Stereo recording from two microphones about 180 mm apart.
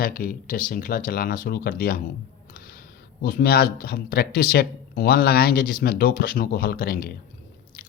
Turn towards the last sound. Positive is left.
turn(degrees=55)  # may be behind; listen again after turning